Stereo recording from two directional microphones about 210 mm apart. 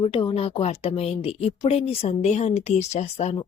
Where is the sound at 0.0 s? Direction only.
25° left (ahead or behind).